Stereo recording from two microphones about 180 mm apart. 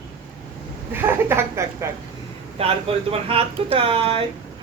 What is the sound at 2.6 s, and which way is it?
A woman's voice, 35° right (ahead or behind).